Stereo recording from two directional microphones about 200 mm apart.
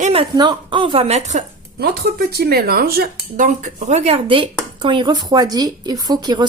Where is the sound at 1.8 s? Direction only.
55° right (ahead or behind); by 6.4 s 20° right (ahead or behind).